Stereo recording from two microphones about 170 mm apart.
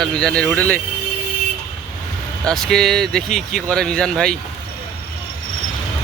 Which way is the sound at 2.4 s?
5° left (ahead or behind).